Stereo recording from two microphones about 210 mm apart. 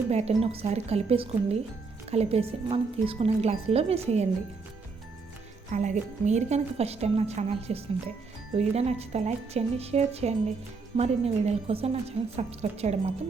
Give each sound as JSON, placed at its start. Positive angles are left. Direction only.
{"t": 0.1, "sound": "a woman's voice", "side_deg": -30}
{"t": 5.7, "sound": "a woman's voice", "side_deg": -35}